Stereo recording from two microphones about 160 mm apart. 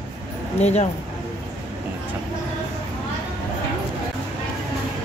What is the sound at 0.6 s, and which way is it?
Speech, 45° left (ahead or behind).